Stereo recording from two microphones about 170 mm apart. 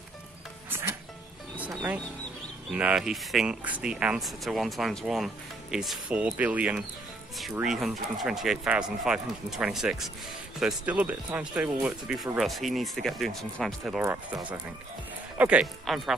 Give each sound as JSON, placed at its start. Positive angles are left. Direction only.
{"t": 2.7, "sound": "speech", "side_deg": -5}
{"t": 14.0, "sound": "speech", "side_deg": -15}